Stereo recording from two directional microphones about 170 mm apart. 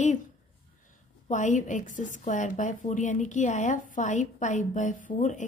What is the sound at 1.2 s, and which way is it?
A woman's voice, 45° left (ahead or behind).